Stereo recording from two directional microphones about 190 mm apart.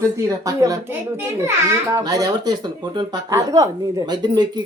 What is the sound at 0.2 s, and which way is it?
A child's voice, 15° right (ahead or behind).